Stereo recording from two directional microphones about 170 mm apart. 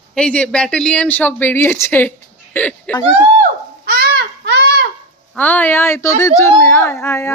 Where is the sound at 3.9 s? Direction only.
70° right (ahead or behind).